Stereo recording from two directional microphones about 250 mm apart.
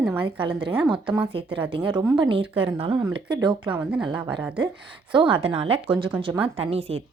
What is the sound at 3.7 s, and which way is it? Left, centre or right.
Speech, centre.